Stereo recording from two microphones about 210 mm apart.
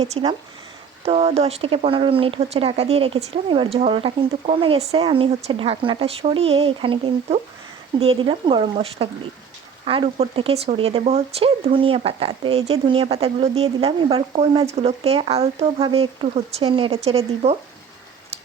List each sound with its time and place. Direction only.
0.0 s speech: 25° right (ahead or behind)